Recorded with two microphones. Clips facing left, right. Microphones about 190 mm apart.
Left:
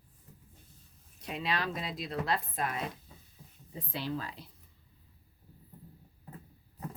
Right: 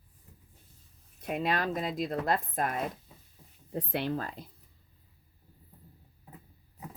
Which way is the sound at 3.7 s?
65° right (ahead or behind).